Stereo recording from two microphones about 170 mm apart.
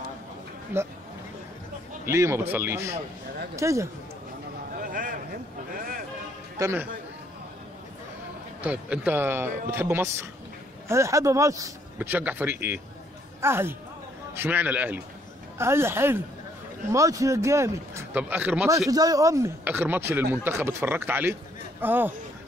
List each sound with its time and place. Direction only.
0.7 s speech: 10° right (ahead or behind)
2.0 s speech: 15° right (ahead or behind)
4.8 s a sound: 55° right (ahead or behind)
6.6 s speech: 15° right (ahead or behind)
8.6 s speech: 10° right (ahead or behind)
18.9 s speech: 20° right (ahead or behind)